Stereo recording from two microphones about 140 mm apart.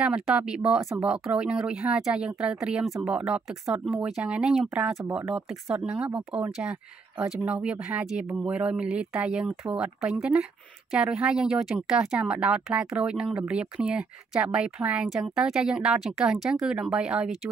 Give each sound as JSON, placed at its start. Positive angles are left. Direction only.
{"t": 0.0, "sound": "speech", "side_deg": -5}